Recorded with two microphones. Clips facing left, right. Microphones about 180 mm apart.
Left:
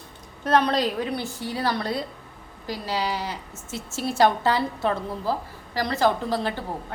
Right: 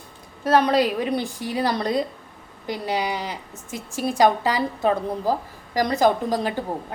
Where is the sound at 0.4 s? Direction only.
10° right (ahead or behind).